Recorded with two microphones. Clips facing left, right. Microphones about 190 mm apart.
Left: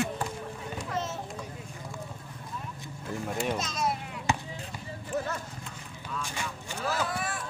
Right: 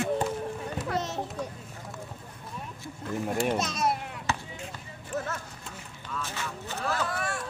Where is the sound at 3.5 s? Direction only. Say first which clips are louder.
Right 3 dB; 65° right (ahead or behind).